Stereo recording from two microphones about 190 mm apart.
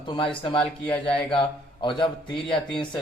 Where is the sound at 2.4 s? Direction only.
5° left (ahead or behind).